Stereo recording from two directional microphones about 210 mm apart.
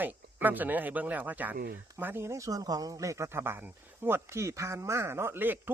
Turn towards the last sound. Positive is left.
turn(degrees=-10)  # may be behind; listen again after turning